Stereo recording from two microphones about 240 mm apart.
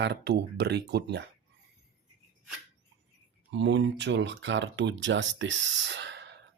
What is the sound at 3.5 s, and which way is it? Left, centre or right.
Speech, right.